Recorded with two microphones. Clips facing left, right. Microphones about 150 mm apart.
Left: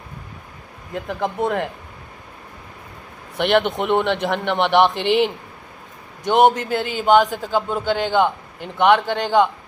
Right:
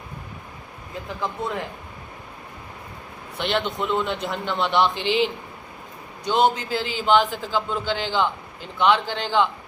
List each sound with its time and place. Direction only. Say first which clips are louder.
0.9 s a man's voice: left 6 dB; 60° left (ahead or behind)
3.3 s a man's voice: left 7 dB; 65° left (ahead or behind)